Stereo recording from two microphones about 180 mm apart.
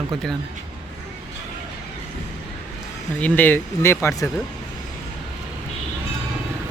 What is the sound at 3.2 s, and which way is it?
Speech, 10° left (ahead or behind).